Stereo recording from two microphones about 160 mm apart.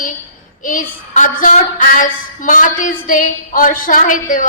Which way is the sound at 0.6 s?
55° left (ahead or behind).